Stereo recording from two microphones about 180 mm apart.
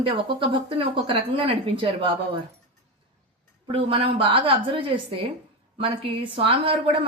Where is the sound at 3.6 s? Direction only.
30° right (ahead or behind).